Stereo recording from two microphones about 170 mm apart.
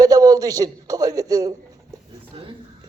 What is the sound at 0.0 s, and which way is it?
A man's voice, 20° right (ahead or behind).